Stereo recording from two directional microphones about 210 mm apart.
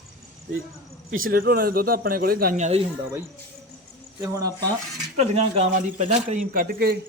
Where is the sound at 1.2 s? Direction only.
45° right (ahead or behind).